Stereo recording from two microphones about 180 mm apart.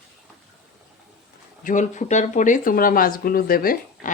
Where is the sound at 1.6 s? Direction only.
40° left (ahead or behind).